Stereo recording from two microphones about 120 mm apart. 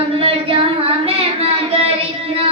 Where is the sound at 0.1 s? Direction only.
55° right (ahead or behind).